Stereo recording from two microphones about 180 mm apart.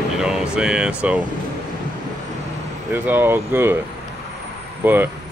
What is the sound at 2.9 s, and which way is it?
Speech, 10° right (ahead or behind).